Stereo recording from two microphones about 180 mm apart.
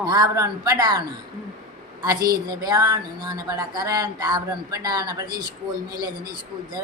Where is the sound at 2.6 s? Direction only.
20° right (ahead or behind).